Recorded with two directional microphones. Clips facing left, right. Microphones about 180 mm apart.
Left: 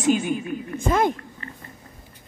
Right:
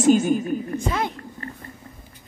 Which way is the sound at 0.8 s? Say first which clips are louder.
Left 5 dB; 50° left (ahead or behind).